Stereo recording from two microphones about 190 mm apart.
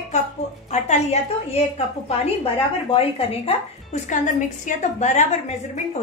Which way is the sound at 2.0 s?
30° left (ahead or behind).